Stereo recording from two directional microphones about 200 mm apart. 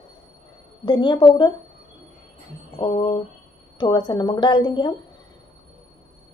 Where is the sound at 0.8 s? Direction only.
20° left (ahead or behind).